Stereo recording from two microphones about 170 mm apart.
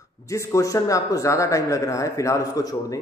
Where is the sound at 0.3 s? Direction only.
20° left (ahead or behind).